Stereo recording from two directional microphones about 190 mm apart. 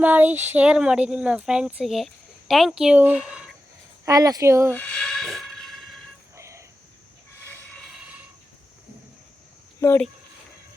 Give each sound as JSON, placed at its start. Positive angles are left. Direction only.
{"t": 0.0, "sound": "speech", "side_deg": -10}
{"t": 4.0, "sound": "speech", "side_deg": -20}
{"t": 4.7, "sound": "a sound", "side_deg": 10}
{"t": 6.3, "sound": "cricket", "side_deg": -15}
{"t": 7.4, "sound": "train", "side_deg": 5}
{"t": 9.8, "sound": "speech", "side_deg": 15}